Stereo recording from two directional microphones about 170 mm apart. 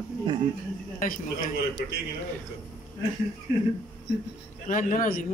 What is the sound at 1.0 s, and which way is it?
Speech, 55° left (ahead or behind).